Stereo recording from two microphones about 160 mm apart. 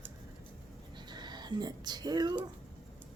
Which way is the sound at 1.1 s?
25° right (ahead or behind).